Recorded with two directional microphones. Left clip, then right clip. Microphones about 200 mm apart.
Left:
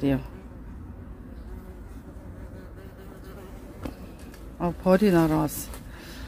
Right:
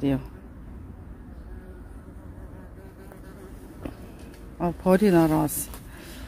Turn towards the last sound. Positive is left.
turn(degrees=-10)  # may be behind; listen again after turning